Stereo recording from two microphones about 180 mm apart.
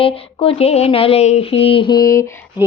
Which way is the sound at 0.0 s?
30° left (ahead or behind).